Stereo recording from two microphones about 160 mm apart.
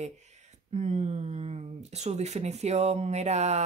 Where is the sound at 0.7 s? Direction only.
45° right (ahead or behind).